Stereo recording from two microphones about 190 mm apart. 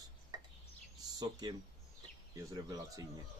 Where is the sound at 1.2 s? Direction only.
20° right (ahead or behind).